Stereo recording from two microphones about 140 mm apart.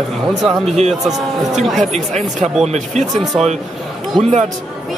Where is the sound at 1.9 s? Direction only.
55° right (ahead or behind).